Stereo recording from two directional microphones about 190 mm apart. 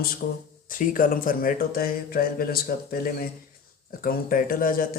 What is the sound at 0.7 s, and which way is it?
Speech, 45° left (ahead or behind).